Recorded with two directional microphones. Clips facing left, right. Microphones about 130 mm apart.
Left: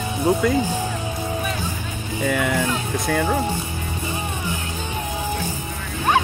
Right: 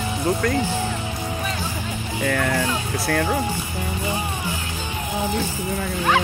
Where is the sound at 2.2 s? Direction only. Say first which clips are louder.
Left 1 dB; 5° left (ahead or behind).